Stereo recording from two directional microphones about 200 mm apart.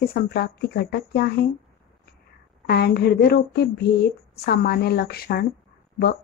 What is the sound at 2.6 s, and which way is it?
Speech, 55° left (ahead or behind).